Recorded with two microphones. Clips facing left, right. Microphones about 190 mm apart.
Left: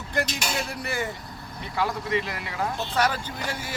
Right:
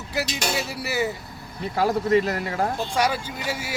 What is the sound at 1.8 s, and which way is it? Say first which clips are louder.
Speech: right 7 dB; 40° right (ahead or behind).